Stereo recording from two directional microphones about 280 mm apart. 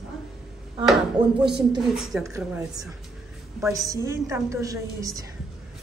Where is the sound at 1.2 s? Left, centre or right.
Right.